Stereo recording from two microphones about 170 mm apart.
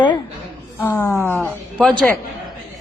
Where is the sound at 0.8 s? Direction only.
10° left (ahead or behind).